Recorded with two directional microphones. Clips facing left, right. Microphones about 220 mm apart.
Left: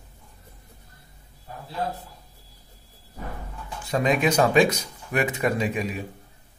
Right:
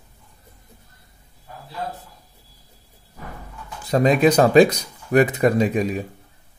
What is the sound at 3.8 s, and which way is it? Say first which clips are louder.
Speech: right 6 dB; 40° right (ahead or behind).